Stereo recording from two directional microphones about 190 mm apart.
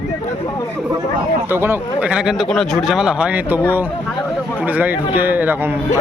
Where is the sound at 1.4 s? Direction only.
10° right (ahead or behind).